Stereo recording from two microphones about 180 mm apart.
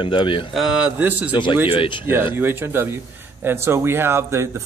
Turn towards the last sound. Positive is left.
turn(degrees=-15)  # may be behind; listen again after turning